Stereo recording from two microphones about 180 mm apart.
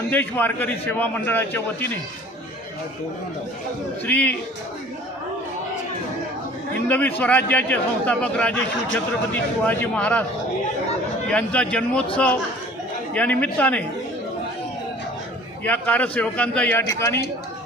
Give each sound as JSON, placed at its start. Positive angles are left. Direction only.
{"t": 0.1, "sound": "a man's voice", "side_deg": 10}
{"t": 4.0, "sound": "a man's voice", "side_deg": 10}
{"t": 6.8, "sound": "a man's voice", "side_deg": 10}
{"t": 9.6, "sound": "a man's voice", "side_deg": 10}
{"t": 11.3, "sound": "a man's voice", "side_deg": 5}
{"t": 15.6, "sound": "a man's voice", "side_deg": 10}